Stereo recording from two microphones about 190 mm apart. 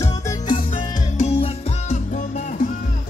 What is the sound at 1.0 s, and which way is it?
Music, 35° left (ahead or behind).